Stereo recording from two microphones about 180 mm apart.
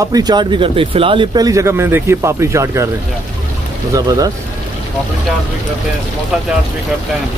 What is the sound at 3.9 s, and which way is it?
Speech, 20° right (ahead or behind).